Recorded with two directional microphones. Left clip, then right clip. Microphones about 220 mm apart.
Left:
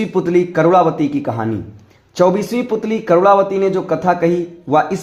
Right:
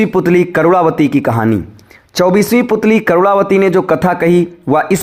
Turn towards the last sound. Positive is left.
turn(degrees=-35)  # may be behind; listen again after turning